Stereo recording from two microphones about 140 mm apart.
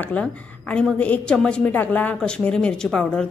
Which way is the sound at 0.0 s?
10° left (ahead or behind).